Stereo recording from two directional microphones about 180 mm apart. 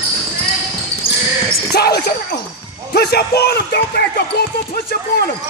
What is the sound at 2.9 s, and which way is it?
Speech, 60° left (ahead or behind).